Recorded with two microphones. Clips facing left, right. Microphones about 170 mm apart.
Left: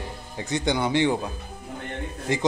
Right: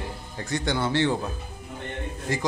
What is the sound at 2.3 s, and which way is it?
Speech, 20° left (ahead or behind).